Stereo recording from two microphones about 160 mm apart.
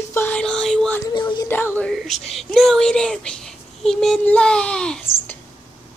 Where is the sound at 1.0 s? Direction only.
25° left (ahead or behind).